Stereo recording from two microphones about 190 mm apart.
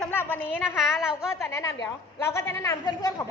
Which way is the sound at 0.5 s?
10° left (ahead or behind).